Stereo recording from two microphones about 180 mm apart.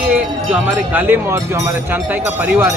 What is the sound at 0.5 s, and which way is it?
Speech, 10° right (ahead or behind).